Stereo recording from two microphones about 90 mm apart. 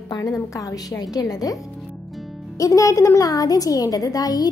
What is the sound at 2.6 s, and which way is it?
A woman's voice, 40° left (ahead or behind).